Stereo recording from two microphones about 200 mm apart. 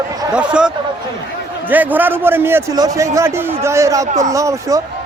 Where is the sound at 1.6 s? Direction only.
10° right (ahead or behind).